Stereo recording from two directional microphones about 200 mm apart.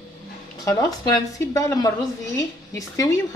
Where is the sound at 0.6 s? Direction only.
20° left (ahead or behind).